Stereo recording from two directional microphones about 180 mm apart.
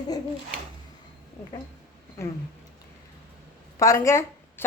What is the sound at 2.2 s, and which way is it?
Speech, 15° left (ahead or behind).